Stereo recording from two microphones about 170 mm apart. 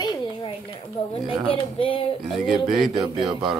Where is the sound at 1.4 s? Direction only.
30° left (ahead or behind).